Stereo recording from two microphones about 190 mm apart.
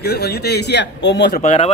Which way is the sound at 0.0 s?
60° left (ahead or behind).